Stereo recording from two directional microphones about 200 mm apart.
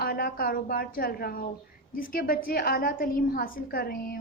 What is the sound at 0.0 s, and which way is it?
A woman's voice, 50° left (ahead or behind).